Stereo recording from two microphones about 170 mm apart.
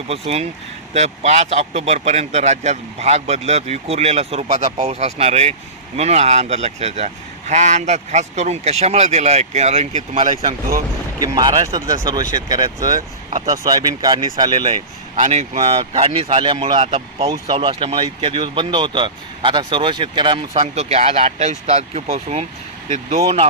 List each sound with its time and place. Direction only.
0.1 s speech: 35° right (ahead or behind)
11.2 s speech: 25° right (ahead or behind)
14.7 s speech: 40° right (ahead or behind)
20.5 s speech: 40° right (ahead or behind)